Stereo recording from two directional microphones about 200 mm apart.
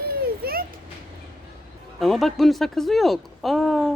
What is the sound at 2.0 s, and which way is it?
Speech, centre (ahead or behind).